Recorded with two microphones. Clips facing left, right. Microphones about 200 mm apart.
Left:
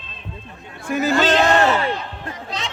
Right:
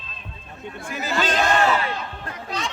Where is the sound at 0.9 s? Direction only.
55° left (ahead or behind).